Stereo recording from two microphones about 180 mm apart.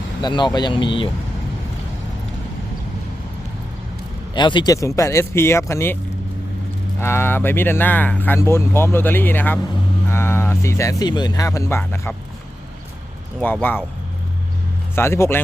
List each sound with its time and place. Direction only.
0.2 s speech: 25° left (ahead or behind)
4.4 s speech: 25° left (ahead or behind)
7.0 s speech: 15° left (ahead or behind)
13.4 s speech: 10° left (ahead or behind)
14.9 s speech: 15° left (ahead or behind)